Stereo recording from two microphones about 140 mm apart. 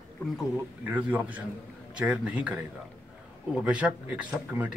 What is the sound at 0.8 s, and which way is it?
Speech, 10° right (ahead or behind).